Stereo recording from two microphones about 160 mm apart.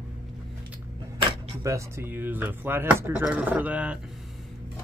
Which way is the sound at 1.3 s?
20° right (ahead or behind).